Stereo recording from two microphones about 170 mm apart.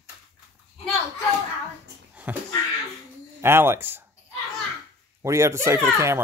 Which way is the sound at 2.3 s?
10° right (ahead or behind).